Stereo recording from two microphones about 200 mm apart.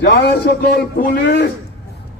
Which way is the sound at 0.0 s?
55° left (ahead or behind).